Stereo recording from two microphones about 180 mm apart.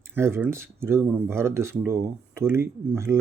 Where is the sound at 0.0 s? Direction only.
15° right (ahead or behind).